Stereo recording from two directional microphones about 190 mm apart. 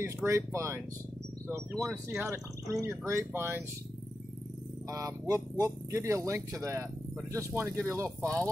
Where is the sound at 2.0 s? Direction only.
15° right (ahead or behind).